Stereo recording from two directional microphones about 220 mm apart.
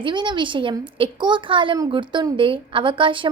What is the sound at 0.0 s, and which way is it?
A child's voice, 20° right (ahead or behind).